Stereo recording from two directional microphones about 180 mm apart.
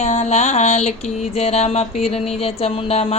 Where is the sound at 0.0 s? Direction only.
40° left (ahead or behind).